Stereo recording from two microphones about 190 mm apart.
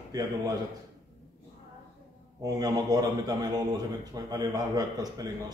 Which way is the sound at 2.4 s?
20° right (ahead or behind).